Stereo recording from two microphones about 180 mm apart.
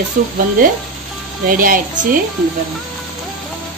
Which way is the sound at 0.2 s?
50° right (ahead or behind).